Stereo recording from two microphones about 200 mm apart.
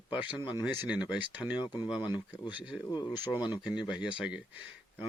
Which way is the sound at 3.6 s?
5° right (ahead or behind).